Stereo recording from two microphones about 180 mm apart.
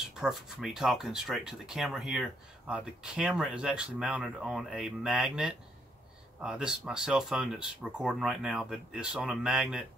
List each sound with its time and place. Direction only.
0.2 s speech: 5° right (ahead or behind)